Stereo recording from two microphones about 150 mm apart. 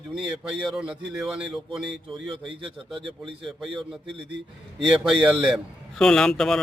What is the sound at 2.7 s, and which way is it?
Speech, 35° right (ahead or behind).